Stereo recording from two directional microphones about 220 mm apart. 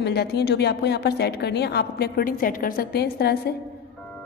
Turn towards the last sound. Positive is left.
turn(degrees=45)  # may be behind; listen again after turning